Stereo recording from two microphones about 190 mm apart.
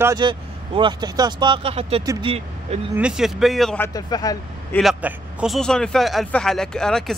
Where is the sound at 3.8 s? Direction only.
20° left (ahead or behind).